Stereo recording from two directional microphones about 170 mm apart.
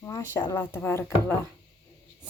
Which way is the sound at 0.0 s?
25° left (ahead or behind).